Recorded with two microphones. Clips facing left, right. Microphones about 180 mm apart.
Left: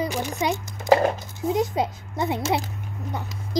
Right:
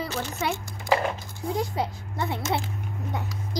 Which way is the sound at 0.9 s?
40° left (ahead or behind).